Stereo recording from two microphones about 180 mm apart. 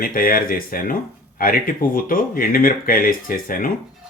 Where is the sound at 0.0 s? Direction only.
50° left (ahead or behind).